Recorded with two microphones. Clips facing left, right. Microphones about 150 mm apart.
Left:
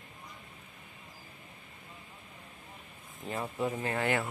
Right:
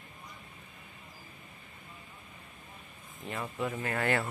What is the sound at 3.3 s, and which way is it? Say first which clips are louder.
Speech: left 2 dB; 25° left (ahead or behind).